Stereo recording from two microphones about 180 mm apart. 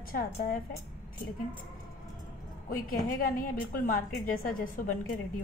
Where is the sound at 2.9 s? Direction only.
50° left (ahead or behind).